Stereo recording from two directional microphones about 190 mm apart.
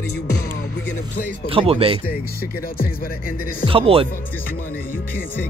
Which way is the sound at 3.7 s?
30° right (ahead or behind).